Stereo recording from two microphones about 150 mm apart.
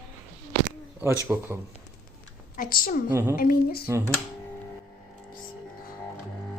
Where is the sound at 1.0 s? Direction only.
15° right (ahead or behind).